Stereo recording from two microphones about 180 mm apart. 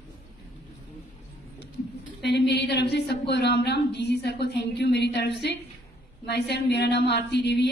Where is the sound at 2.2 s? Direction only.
70° left (ahead or behind).